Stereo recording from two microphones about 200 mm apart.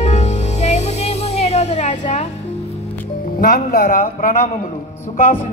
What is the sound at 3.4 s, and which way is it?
A man's voice, 45° left (ahead or behind).